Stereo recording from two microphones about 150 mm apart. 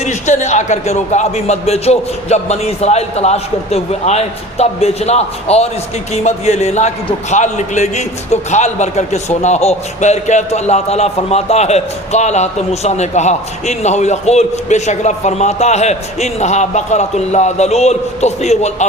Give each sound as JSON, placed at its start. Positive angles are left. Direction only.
{"t": 0.0, "sound": "a man's voice", "side_deg": 50}